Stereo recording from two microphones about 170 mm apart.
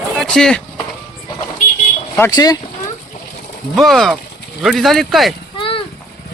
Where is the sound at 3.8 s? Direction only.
Centre (ahead or behind).